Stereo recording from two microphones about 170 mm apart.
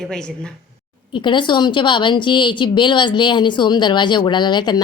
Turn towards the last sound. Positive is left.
turn(degrees=25)  # may be behind; listen again after turning